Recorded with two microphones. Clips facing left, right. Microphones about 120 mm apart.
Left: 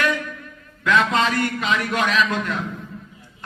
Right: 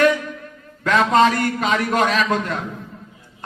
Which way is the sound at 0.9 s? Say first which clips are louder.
Right 4 dB; 40° right (ahead or behind).